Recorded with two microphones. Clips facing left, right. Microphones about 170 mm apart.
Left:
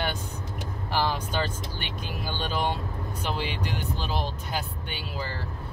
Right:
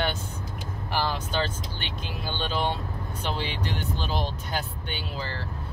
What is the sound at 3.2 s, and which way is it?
Speech, 5° left (ahead or behind).